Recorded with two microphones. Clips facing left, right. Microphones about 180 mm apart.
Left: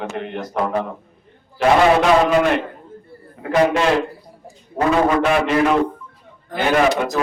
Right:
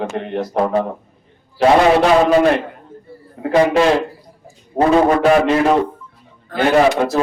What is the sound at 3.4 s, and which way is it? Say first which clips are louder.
A man's voice: right 3 dB; 35° right (ahead or behind).